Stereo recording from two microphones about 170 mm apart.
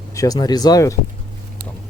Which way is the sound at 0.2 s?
20° left (ahead or behind).